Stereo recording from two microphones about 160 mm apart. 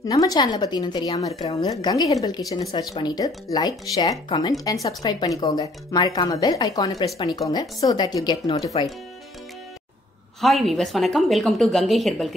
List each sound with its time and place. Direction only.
0.0 s speech: 20° left (ahead or behind)
10.4 s speech: centre (ahead or behind)